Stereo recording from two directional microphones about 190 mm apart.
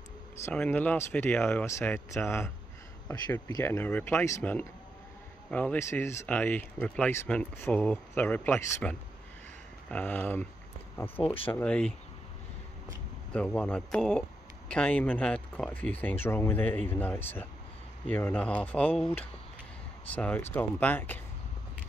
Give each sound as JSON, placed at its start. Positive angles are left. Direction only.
{"t": 0.5, "sound": "speech", "side_deg": 10}
{"t": 13.3, "sound": "speech", "side_deg": 5}